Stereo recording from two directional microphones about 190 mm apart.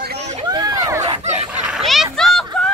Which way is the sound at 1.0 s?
35° right (ahead or behind).